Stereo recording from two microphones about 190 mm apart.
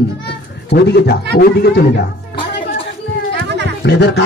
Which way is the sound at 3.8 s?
60° left (ahead or behind).